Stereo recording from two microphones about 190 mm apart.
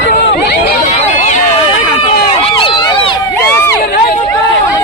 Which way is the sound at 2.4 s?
25° left (ahead or behind).